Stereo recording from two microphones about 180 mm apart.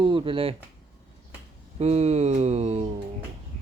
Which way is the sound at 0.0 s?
30° right (ahead or behind).